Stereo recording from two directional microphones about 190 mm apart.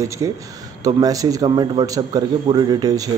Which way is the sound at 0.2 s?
20° right (ahead or behind).